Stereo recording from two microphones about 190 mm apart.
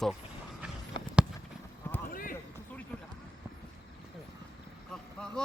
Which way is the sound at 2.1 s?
45° left (ahead or behind).